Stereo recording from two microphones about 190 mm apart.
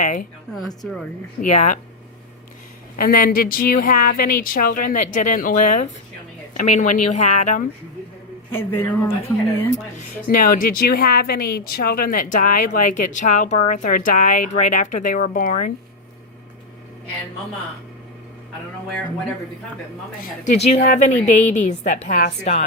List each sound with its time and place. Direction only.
0.0 s a woman's voice: 45° left (ahead or behind)
1.4 s a woman's voice: 40° left (ahead or behind)
2.9 s a woman's voice: 50° left (ahead or behind)
8.5 s speech: 10° left (ahead or behind)
10.2 s a woman's voice: 50° left (ahead or behind)
20.4 s a woman's voice: 35° left (ahead or behind)